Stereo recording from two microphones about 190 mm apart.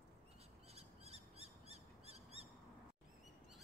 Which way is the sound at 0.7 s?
35° right (ahead or behind).